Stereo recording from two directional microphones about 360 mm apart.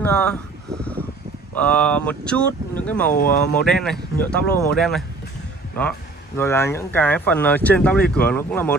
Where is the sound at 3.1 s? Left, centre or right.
Left.